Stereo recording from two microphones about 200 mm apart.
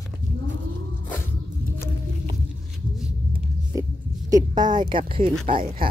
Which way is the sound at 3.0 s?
10° right (ahead or behind).